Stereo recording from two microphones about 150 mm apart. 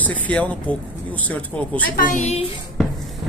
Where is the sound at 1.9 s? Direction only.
65° left (ahead or behind); by 2.5 s 50° left (ahead or behind).